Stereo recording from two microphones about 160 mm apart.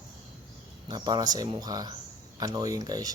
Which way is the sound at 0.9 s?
25° right (ahead or behind).